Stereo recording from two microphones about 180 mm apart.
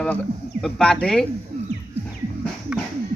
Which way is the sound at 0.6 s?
Centre (ahead or behind).